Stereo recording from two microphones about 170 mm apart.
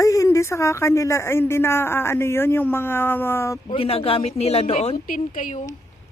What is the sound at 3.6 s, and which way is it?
A man's voice, 35° left (ahead or behind).